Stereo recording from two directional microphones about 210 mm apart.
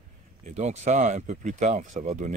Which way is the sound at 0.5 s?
35° right (ahead or behind).